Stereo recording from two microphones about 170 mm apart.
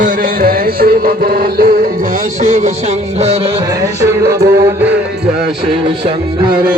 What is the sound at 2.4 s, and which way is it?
Music, 40° right (ahead or behind).